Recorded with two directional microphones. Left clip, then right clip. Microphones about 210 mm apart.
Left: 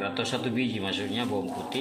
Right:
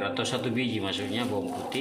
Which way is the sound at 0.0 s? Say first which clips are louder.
Right 1 dB; centre (ahead or behind).